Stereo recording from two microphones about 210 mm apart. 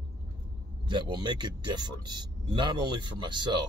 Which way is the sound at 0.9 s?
20° right (ahead or behind).